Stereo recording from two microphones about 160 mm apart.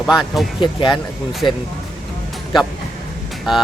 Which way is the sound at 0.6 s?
30° left (ahead or behind).